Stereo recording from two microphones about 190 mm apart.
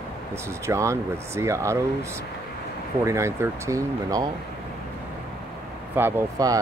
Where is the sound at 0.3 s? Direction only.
15° right (ahead or behind).